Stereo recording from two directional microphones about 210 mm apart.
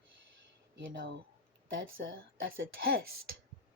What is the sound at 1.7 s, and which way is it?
Speech, 65° right (ahead or behind).